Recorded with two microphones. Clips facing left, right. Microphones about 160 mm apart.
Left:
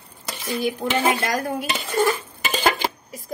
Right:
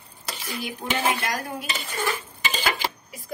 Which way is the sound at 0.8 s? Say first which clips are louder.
Left 2 dB; 55° left (ahead or behind).